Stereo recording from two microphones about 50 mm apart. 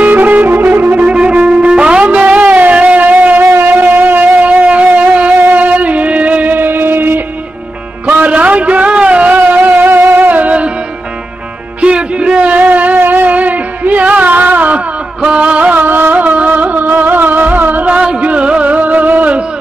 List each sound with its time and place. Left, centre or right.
0.0 s music: right
1.1 s music: right
2.1 s a sound: right
3.5 s music: right
4.5 s wind instrument: right
5.1 s music: right
8.2 s a sound: right
11.8 s a sound: right
15.2 s music: right
15.7 s music: right